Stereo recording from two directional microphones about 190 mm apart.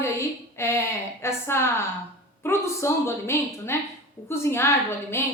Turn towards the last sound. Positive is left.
turn(degrees=15)  # may be behind; listen again after turning